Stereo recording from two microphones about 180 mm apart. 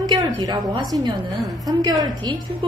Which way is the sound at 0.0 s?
20° right (ahead or behind).